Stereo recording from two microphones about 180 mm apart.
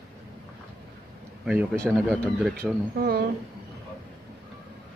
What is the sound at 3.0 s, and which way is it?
Speech, 60° right (ahead or behind).